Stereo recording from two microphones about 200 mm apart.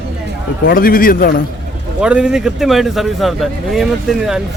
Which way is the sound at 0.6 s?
45° left (ahead or behind).